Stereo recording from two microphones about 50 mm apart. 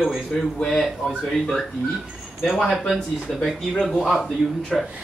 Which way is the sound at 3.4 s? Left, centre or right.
Centre.